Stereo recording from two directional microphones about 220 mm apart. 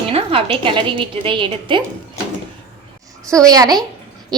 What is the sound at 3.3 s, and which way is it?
Speech, 15° right (ahead or behind).